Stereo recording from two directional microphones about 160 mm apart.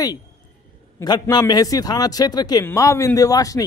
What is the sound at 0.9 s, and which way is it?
A man's voice, 25° left (ahead or behind).